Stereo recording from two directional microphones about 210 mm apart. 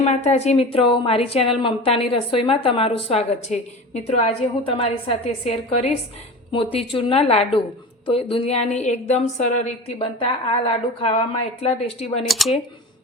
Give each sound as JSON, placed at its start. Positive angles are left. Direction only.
{"t": 0.0, "sound": "a woman's voice", "side_deg": 30}
{"t": 12.3, "sound": "speech", "side_deg": 0}